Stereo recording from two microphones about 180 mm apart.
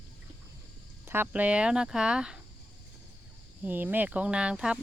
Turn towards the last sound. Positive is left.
turn(degrees=-5)  # may be behind; listen again after turning